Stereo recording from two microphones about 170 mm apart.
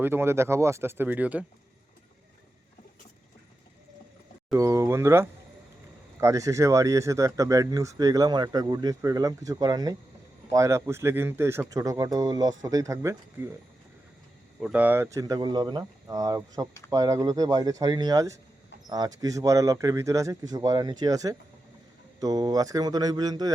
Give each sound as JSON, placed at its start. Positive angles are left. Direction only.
{"t": 0.0, "sound": "speech", "side_deg": -15}
{"t": 4.5, "sound": "speech", "side_deg": -15}
{"t": 14.6, "sound": "speech", "side_deg": -10}